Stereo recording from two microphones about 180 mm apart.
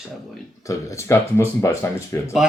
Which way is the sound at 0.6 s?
15° left (ahead or behind).